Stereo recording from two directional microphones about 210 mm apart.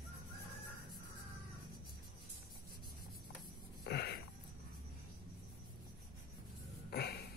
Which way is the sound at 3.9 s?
50° left (ahead or behind).